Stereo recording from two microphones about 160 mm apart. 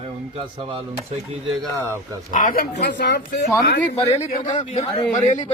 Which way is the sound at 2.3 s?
60° left (ahead or behind).